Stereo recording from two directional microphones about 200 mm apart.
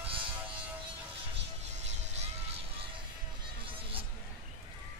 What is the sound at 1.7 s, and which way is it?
Vehicle, 35° right (ahead or behind).